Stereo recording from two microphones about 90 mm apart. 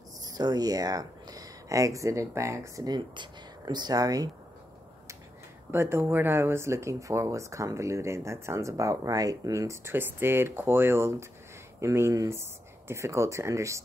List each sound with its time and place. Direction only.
0.3 s speech: 50° right (ahead or behind)
5.7 s speech: 30° right (ahead or behind)